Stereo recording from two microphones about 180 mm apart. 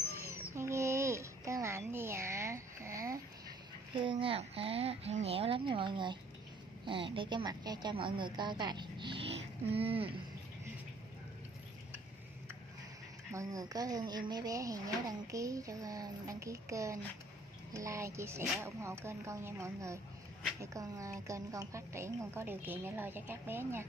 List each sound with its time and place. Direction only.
0.1 s babbling: 15° right (ahead or behind)
4.0 s a sound: 30° right (ahead or behind)
6.9 s a woman's voice: 30° right (ahead or behind)
13.3 s a woman's voice: 20° right (ahead or behind)